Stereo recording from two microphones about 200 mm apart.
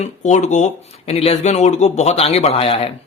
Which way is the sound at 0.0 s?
35° left (ahead or behind).